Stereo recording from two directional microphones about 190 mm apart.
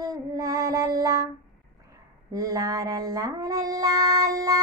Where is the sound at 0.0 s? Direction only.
20° right (ahead or behind).